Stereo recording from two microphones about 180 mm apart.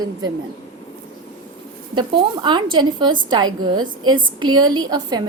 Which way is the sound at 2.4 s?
25° right (ahead or behind).